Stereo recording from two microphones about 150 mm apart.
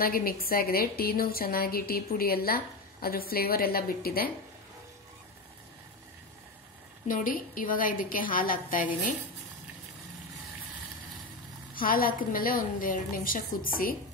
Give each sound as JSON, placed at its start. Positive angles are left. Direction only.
{"t": 0.0, "sound": "a woman's voice", "side_deg": 75}
{"t": 7.1, "sound": "a woman's voice", "side_deg": 65}
{"t": 11.7, "sound": "a woman's voice", "side_deg": 70}